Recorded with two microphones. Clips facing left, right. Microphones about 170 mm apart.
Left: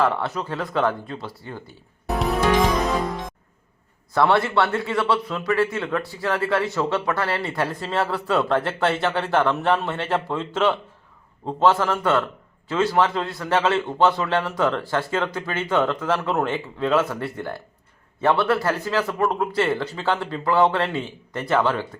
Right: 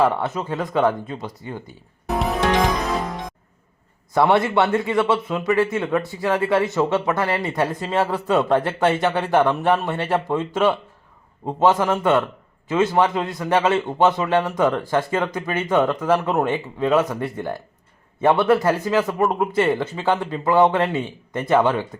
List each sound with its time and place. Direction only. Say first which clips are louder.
0.0 s speech: right 3 dB; 20° right (ahead or behind)
4.1 s speech: right 2 dB; 15° right (ahead or behind)